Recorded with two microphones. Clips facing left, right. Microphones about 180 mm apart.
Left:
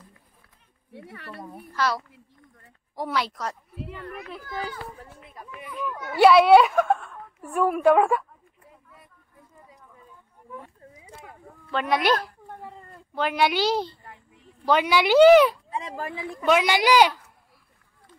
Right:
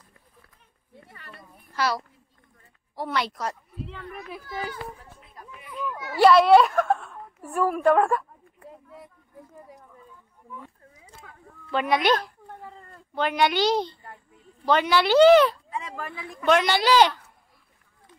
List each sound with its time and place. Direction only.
0.9 s speech: 75° left (ahead or behind)
1.8 s a child's voice: 5° right (ahead or behind)
5.3 s a woman's voice: 5° left (ahead or behind)
8.6 s a sound: 80° right
11.7 s speech: centre (ahead or behind)
12.6 s cat: 5° left (ahead or behind)
14.6 s speech: 10° left (ahead or behind)
16.0 s speech: 20° left (ahead or behind)
16.4 s speech: 10° left (ahead or behind)